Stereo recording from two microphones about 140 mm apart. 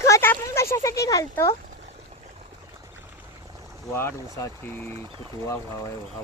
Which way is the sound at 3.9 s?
15° left (ahead or behind).